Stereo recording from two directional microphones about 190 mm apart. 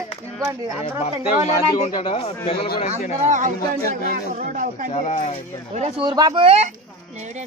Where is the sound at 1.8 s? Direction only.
30° left (ahead or behind).